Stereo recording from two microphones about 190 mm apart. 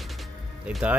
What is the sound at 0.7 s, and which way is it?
Speech, 5° right (ahead or behind).